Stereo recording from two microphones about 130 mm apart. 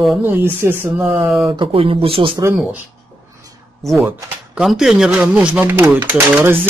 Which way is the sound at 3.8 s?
Centre (ahead or behind).